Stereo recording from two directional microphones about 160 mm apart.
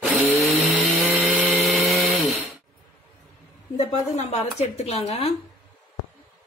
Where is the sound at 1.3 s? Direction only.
Centre (ahead or behind).